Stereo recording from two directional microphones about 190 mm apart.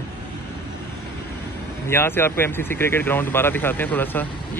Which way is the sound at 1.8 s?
10° left (ahead or behind).